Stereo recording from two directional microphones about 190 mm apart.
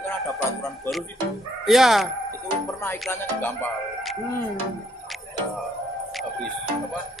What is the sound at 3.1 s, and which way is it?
Speech, 10° left (ahead or behind).